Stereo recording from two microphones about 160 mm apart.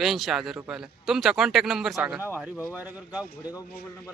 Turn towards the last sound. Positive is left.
turn(degrees=-10)  # may be behind; listen again after turning